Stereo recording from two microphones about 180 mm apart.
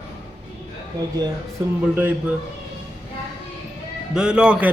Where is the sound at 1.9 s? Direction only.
10° right (ahead or behind).